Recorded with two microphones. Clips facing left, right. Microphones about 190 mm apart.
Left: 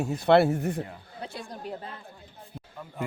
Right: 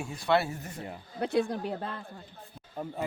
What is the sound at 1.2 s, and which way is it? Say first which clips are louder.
Speech: right 11 dB; 60° right (ahead or behind).